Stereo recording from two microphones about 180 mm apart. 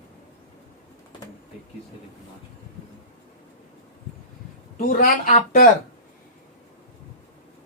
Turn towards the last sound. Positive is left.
turn(degrees=45)  # may be behind; listen again after turning